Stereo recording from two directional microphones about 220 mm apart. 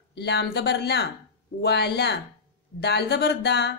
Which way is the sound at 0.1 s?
50° left (ahead or behind).